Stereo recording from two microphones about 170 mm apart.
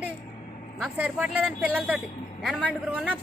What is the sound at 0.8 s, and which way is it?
Speech, 5° right (ahead or behind).